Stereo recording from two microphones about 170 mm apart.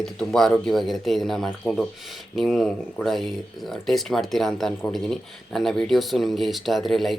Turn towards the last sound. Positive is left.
turn(degrees=0)  # may be behind; listen again after turning